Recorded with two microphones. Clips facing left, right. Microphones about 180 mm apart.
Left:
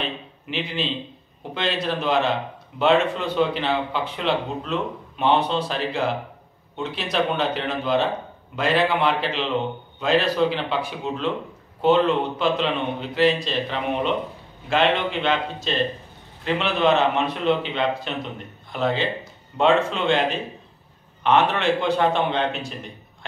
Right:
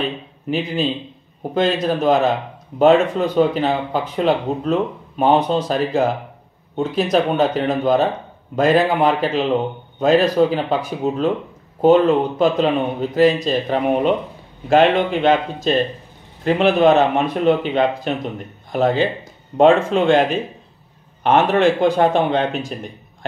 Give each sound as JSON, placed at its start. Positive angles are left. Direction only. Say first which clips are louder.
{"t": 0.0, "sound": "a man's voice", "louder": "right 6 dB", "side_deg": -45}